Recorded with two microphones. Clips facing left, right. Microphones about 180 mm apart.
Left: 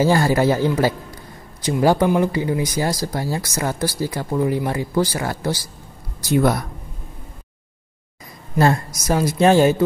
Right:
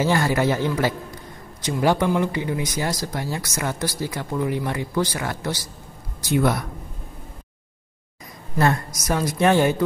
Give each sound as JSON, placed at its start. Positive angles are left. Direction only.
{"t": 0.0, "sound": "speech", "side_deg": 35}
{"t": 8.5, "sound": "a woman's voice", "side_deg": 30}